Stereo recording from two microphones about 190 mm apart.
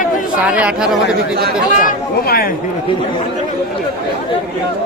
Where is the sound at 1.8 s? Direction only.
50° left (ahead or behind).